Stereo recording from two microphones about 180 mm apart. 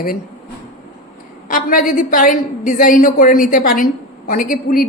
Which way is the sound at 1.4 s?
50° left (ahead or behind).